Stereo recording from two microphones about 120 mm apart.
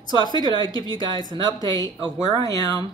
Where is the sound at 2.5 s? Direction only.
25° left (ahead or behind).